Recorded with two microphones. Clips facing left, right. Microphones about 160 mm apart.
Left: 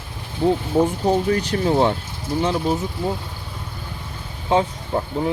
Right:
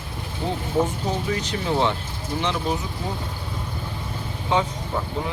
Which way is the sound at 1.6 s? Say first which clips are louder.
Left 4 dB; 45° left (ahead or behind).